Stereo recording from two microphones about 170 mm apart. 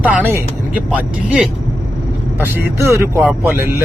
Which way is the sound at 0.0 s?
10° right (ahead or behind).